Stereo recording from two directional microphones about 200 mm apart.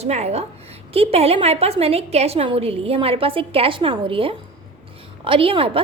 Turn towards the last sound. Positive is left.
turn(degrees=-30)  # may be behind; listen again after turning